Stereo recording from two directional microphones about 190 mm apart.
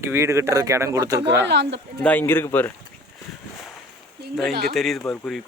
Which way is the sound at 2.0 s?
10° left (ahead or behind).